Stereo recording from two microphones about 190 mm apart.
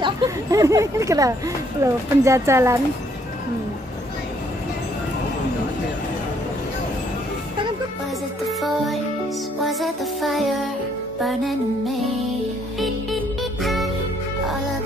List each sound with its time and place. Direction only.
0.0 s speech: 20° right (ahead or behind)
8.5 s music: centre (ahead or behind)